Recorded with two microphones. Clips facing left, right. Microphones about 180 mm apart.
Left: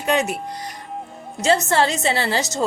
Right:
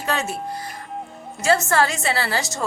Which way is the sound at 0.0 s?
20° left (ahead or behind).